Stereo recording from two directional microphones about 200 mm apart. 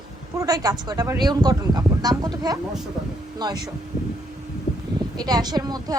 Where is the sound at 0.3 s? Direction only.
20° right (ahead or behind).